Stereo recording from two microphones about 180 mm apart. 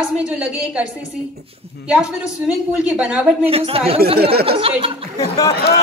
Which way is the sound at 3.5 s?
30° right (ahead or behind).